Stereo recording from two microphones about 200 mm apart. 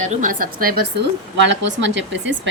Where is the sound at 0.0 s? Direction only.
40° right (ahead or behind).